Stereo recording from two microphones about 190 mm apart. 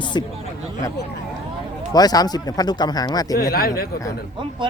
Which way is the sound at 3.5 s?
50° left (ahead or behind).